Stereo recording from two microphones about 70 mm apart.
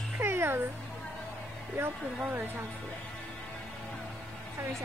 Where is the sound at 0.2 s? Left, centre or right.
Right.